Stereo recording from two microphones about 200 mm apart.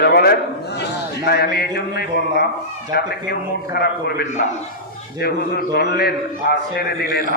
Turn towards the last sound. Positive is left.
turn(degrees=50)  # may be behind; listen again after turning